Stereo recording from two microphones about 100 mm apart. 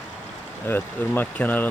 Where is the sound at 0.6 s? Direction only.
20° left (ahead or behind).